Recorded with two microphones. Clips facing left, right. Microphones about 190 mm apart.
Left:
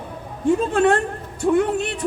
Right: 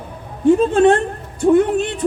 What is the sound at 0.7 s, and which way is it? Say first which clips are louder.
A man's voice: right 5 dB; 20° right (ahead or behind).